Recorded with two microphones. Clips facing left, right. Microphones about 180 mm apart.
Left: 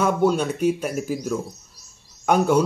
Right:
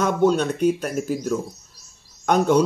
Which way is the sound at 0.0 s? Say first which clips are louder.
Right 1 dB; 10° left (ahead or behind).